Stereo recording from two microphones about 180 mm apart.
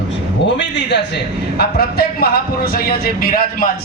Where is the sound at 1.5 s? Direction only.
60° left (ahead or behind).